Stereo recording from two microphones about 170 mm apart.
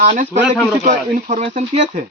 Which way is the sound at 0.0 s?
50° right (ahead or behind).